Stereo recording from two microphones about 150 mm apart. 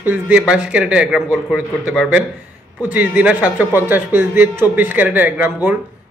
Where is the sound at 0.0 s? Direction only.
10° right (ahead or behind).